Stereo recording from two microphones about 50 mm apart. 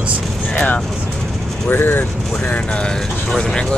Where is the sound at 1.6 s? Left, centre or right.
Left.